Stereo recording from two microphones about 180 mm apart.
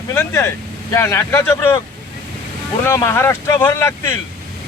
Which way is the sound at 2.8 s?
15° left (ahead or behind).